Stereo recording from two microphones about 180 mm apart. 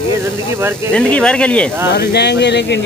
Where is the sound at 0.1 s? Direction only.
15° right (ahead or behind).